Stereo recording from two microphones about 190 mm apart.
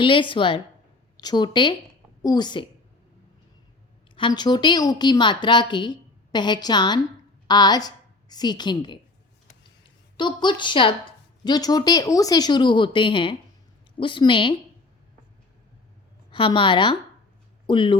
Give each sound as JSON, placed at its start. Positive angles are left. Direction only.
{"t": 0.0, "sound": "a woman's voice", "side_deg": 25}
{"t": 4.1, "sound": "a woman's voice", "side_deg": 25}
{"t": 10.2, "sound": "a woman's voice", "side_deg": 25}
{"t": 16.3, "sound": "a woman's voice", "side_deg": 25}